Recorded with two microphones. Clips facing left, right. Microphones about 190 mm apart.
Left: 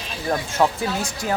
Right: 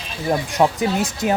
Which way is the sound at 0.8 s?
20° right (ahead or behind).